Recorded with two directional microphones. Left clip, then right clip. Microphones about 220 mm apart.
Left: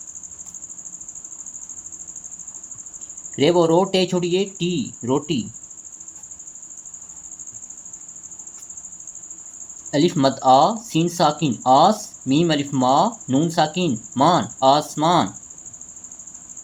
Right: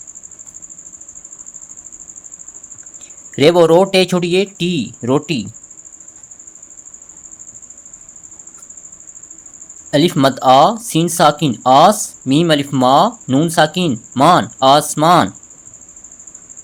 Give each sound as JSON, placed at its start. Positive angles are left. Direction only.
{"t": 3.3, "sound": "speech", "side_deg": -50}
{"t": 9.9, "sound": "speech", "side_deg": -45}